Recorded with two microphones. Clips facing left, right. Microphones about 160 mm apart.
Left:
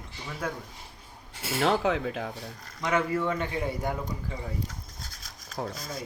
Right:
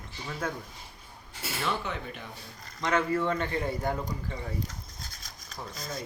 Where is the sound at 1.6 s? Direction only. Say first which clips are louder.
Left 8 dB; 90° left.